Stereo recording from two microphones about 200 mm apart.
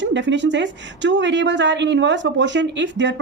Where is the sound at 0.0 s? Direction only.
65° right (ahead or behind).